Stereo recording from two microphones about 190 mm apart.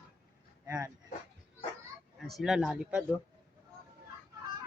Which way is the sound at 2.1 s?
Centre (ahead or behind).